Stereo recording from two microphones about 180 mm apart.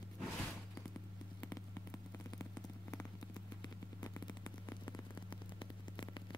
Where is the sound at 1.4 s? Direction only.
15° left (ahead or behind).